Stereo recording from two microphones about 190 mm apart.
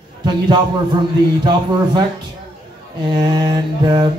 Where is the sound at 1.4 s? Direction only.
20° right (ahead or behind).